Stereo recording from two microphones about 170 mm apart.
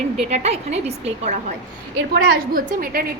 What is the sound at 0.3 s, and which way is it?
A woman's voice, 40° right (ahead or behind).